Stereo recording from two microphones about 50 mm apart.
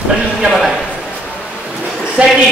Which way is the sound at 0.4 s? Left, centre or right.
Centre.